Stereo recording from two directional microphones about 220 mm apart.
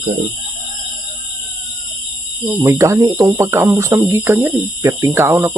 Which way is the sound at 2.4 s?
10° right (ahead or behind).